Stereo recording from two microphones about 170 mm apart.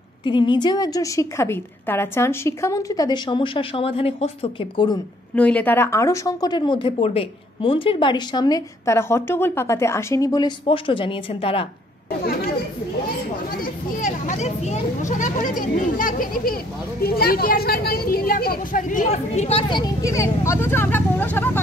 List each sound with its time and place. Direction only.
0.2 s speech: 25° left (ahead or behind)
5.3 s speech: 10° left (ahead or behind); by 11.6 s 30° left (ahead or behind)
13.6 s a child's voice: 50° left (ahead or behind)
19.8 s speech: 20° left (ahead or behind)